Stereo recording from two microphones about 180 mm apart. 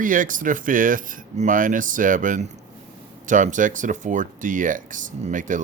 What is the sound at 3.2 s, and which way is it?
Speech, 45° right (ahead or behind).